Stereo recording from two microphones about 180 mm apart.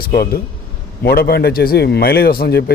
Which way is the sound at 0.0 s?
60° left (ahead or behind).